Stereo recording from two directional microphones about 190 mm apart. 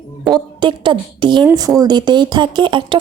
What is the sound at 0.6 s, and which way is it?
Speech, 25° right (ahead or behind).